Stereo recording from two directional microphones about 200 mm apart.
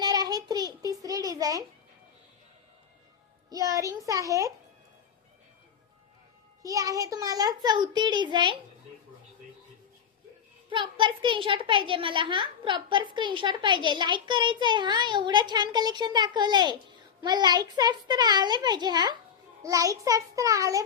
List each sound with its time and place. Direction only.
0.0 s child singing: 20° right (ahead or behind)
3.5 s child singing: 15° right (ahead or behind)
6.6 s a child's voice: 15° right (ahead or behind)
10.7 s a child's voice: 25° right (ahead or behind)
19.6 s child singing: 15° right (ahead or behind)